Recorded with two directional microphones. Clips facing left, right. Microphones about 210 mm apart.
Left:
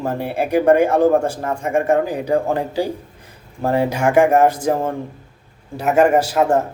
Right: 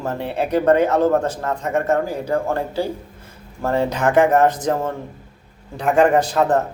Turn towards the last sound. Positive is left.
turn(degrees=10)  # may be behind; listen again after turning